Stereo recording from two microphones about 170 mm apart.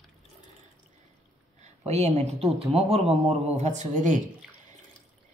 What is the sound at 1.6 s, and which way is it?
A woman's voice, 40° right (ahead or behind).